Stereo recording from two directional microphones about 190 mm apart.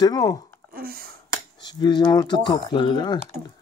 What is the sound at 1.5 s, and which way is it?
Speech, 20° left (ahead or behind).